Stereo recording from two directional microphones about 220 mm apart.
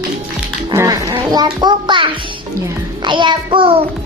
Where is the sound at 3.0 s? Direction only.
20° right (ahead or behind).